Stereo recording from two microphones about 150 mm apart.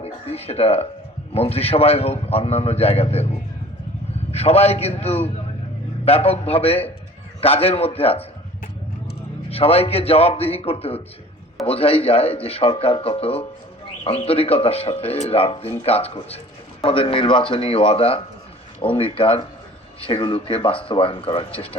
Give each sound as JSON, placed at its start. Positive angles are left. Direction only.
{"t": 0.0, "sound": "a man's voice", "side_deg": 45}
{"t": 4.3, "sound": "a man's voice", "side_deg": 45}
{"t": 9.5, "sound": "speech", "side_deg": 40}